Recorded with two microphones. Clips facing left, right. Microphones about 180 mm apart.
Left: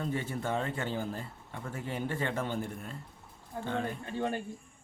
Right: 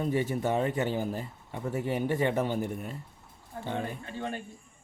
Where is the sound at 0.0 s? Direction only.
15° right (ahead or behind).